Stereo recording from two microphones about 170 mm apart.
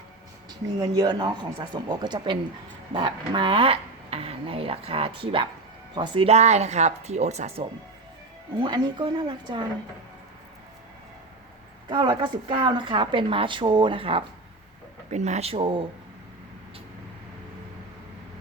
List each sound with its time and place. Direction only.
0.8 s speech: 25° right (ahead or behind)
8.5 s speech: 25° right (ahead or behind)
11.9 s speech: 25° right (ahead or behind)
15.1 s speech: 40° right (ahead or behind)